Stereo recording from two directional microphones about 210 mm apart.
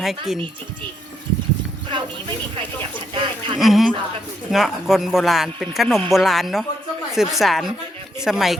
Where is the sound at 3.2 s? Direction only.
25° right (ahead or behind).